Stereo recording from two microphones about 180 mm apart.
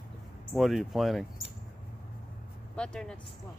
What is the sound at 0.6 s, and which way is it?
Speech, centre (ahead or behind).